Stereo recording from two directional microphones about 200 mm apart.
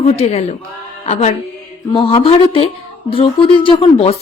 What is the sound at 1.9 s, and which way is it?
Speech, 25° left (ahead or behind).